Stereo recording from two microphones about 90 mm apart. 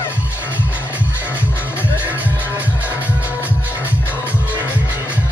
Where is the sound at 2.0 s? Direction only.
20° right (ahead or behind).